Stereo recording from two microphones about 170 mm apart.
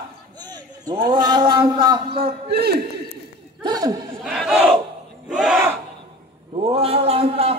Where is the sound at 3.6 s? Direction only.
20° right (ahead or behind).